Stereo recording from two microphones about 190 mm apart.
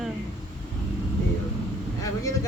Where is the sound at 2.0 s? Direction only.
15° left (ahead or behind).